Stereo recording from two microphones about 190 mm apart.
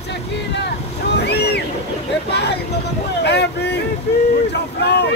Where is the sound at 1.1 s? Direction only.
60° left (ahead or behind).